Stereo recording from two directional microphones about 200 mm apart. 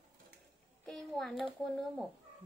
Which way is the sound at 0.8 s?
Centre (ahead or behind).